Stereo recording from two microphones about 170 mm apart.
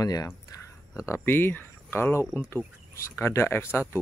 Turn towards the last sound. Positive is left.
turn(degrees=15)  # may be behind; listen again after turning